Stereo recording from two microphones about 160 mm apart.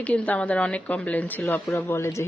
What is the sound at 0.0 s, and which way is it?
Speech, 10° left (ahead or behind).